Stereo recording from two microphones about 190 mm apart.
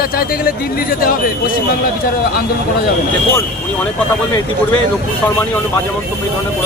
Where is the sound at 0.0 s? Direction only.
50° left (ahead or behind).